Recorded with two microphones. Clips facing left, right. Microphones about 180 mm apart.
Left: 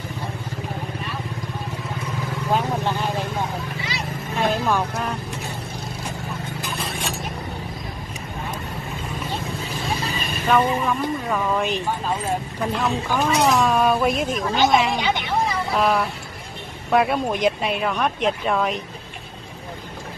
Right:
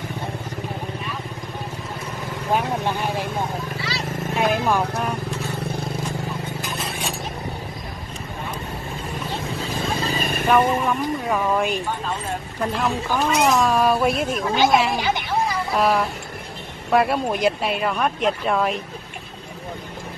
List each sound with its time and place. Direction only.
2.5 s vehicle: 15° right (ahead or behind)
4.4 s vehicle: 10° right (ahead or behind)
10.1 s vehicle: 50° right (ahead or behind)
10.4 s speech: 5° right (ahead or behind)